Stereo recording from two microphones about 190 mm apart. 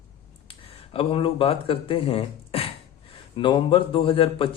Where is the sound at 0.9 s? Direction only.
30° left (ahead or behind).